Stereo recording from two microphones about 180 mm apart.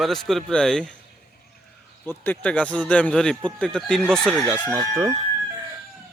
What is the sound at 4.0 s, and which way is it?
Speech, 10° right (ahead or behind).